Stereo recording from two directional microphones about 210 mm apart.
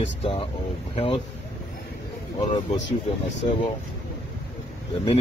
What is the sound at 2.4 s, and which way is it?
Speech, 30° left (ahead or behind).